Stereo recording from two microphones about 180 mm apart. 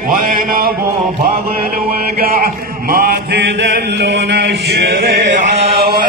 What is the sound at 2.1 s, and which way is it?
Mantra, 55° right (ahead or behind).